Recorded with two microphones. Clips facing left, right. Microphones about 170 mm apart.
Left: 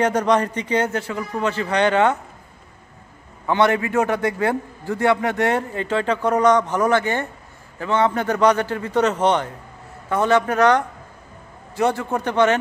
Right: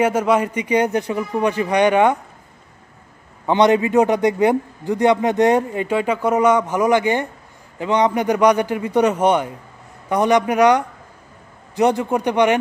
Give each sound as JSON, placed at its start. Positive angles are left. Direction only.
{"t": 0.0, "sound": "a man's voice", "side_deg": -10}
{"t": 3.4, "sound": "a man's voice", "side_deg": -20}